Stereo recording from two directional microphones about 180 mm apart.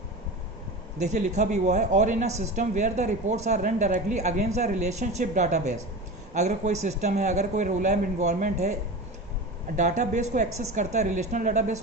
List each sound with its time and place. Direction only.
0.9 s speech: 40° right (ahead or behind)
9.7 s speech: 40° right (ahead or behind)